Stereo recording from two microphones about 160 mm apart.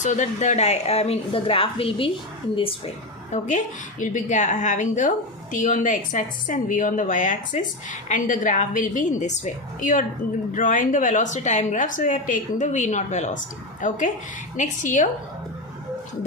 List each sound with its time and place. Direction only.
0.0 s a woman's voice: 50° left (ahead or behind)
3.3 s a woman's voice: 50° left (ahead or behind)